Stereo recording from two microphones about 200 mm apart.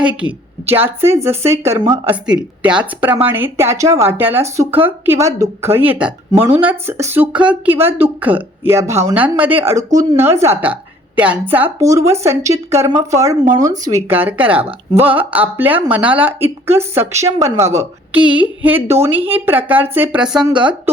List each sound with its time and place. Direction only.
0.0 s speech: 5° right (ahead or behind)
2.2 s speech: 5° right (ahead or behind)